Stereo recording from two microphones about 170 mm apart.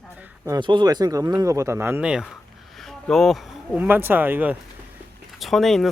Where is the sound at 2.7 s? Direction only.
Centre (ahead or behind).